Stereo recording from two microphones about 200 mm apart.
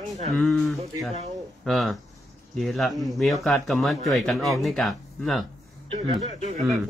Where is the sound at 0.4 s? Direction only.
Centre (ahead or behind).